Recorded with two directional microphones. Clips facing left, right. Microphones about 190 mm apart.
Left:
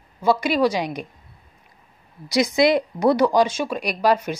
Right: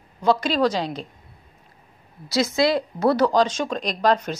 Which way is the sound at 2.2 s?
15° left (ahead or behind).